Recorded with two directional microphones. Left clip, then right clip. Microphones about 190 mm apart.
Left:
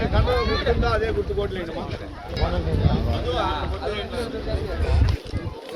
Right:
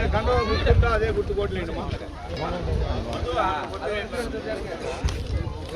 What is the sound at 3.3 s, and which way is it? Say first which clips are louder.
Speech: right 2 dB; 5° right (ahead or behind).